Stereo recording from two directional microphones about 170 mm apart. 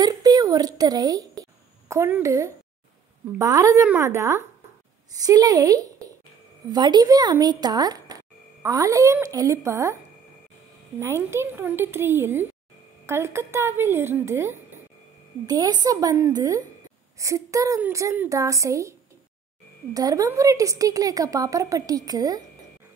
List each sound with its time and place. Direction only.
0.0 s a woman's voice: 25° right (ahead or behind)
11.0 s a woman's voice: 15° right (ahead or behind)